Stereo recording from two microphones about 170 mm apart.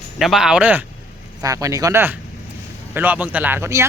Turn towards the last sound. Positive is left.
turn(degrees=-15)  # may be behind; listen again after turning